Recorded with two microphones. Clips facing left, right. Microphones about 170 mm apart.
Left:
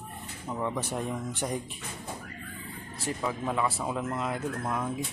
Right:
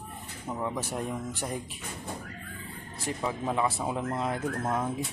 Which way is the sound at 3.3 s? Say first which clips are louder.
Right 1 dB; 20° right (ahead or behind).